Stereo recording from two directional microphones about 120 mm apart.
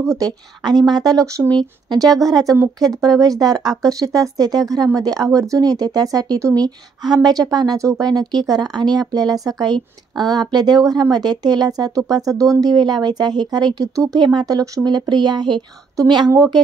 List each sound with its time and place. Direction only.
0.1 s speech: 30° right (ahead or behind)